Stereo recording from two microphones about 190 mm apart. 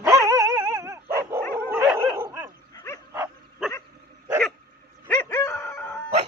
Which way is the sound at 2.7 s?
15° left (ahead or behind).